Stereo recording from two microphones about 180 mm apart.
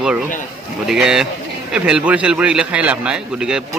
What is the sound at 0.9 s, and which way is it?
Speech, 5° right (ahead or behind).